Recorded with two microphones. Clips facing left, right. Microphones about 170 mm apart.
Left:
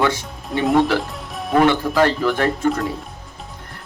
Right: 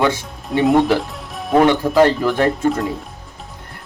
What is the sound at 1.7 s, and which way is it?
Speech, 20° right (ahead or behind).